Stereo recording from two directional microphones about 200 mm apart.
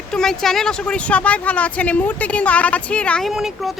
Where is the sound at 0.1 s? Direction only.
Centre (ahead or behind).